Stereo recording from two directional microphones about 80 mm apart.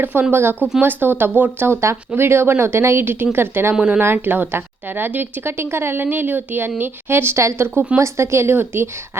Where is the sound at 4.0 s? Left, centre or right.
Right.